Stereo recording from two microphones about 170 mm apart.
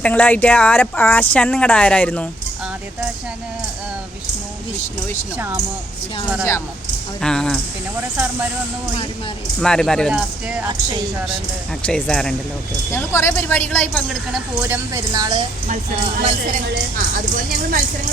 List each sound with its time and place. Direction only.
0.0 s speech: 10° left (ahead or behind)
5.4 s a woman's voice: 20° right (ahead or behind)
7.2 s speech: 5° left (ahead or behind)
9.6 s speech: 5° left (ahead or behind)
11.9 s speech: 5° left (ahead or behind)
13.9 s speech: centre (ahead or behind)
14.7 s a woman's voice: 20° right (ahead or behind)
15.6 s speech: 55° right (ahead or behind)